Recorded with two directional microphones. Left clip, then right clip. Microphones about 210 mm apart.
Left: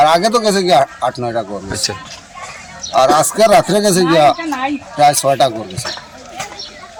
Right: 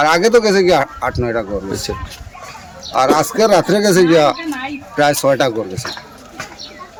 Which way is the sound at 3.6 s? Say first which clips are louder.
Left 1 dB; 25° right (ahead or behind).